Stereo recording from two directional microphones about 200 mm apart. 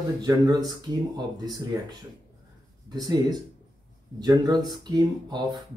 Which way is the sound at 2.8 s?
20° right (ahead or behind).